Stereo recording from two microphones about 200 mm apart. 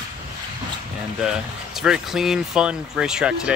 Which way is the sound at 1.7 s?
Centre (ahead or behind).